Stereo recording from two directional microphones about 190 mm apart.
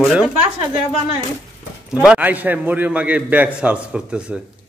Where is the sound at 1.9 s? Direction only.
5° right (ahead or behind).